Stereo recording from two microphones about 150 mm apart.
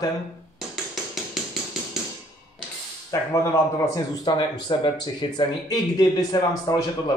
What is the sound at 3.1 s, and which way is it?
Speech, 25° left (ahead or behind).